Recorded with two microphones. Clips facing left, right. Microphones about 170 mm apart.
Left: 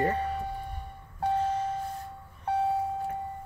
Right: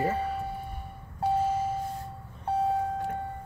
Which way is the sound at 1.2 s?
5° right (ahead or behind).